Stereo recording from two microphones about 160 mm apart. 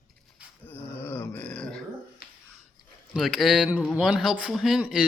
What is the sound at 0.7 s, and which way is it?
Grunt, 15° left (ahead or behind).